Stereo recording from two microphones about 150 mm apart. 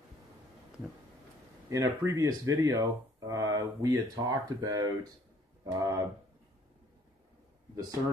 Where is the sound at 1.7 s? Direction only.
20° right (ahead or behind).